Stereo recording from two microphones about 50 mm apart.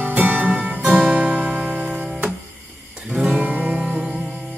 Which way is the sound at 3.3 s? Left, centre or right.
Right.